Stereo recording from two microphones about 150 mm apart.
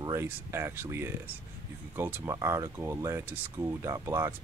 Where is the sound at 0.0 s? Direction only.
20° right (ahead or behind).